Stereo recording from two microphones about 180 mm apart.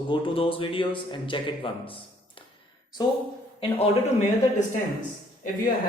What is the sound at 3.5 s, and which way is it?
Speech, 35° left (ahead or behind).